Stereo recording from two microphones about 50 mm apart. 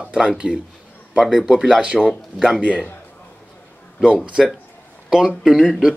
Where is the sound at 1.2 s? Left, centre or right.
Centre.